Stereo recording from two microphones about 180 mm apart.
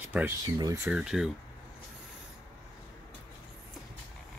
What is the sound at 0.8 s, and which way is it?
Speech, 5° right (ahead or behind).